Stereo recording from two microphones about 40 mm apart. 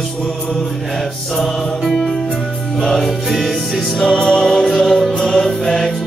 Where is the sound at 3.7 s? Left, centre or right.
Centre.